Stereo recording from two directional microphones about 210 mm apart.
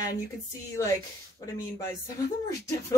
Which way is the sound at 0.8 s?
15° left (ahead or behind).